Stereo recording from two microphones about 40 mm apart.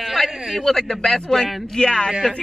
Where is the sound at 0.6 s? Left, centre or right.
Centre.